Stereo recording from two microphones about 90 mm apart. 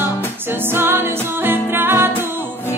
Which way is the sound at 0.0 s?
25° right (ahead or behind).